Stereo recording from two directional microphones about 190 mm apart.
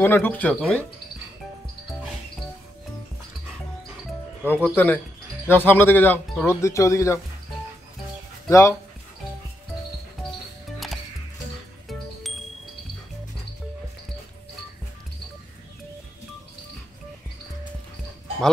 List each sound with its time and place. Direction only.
0.0 s speech: 10° left (ahead or behind)
4.5 s speech: 10° left (ahead or behind)
8.5 s speech: 15° left (ahead or behind)
11.9 s music: centre (ahead or behind)